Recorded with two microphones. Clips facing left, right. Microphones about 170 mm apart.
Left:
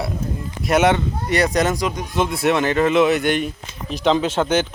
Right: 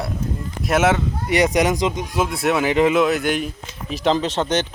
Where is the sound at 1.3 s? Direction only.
15° right (ahead or behind).